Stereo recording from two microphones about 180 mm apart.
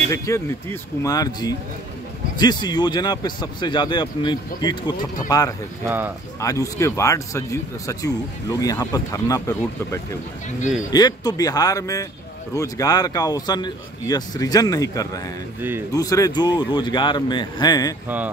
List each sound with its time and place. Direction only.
0.1 s speech: 15° left (ahead or behind)
5.9 s speech: 10° right (ahead or behind)
6.4 s speech: 15° left (ahead or behind)
18.0 s speech: 10° right (ahead or behind)